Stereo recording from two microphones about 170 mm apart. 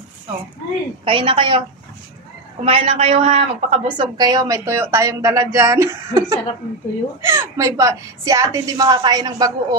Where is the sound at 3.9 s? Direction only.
25° right (ahead or behind).